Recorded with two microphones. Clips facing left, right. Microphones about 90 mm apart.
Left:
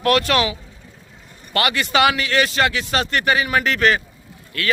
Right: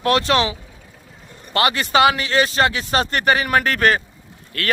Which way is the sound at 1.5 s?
30° right (ahead or behind).